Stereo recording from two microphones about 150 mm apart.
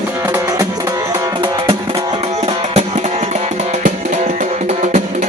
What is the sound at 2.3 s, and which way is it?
Music, 45° right (ahead or behind).